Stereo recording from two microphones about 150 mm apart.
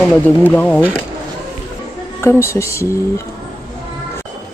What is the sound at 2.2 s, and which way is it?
Speech, 15° left (ahead or behind).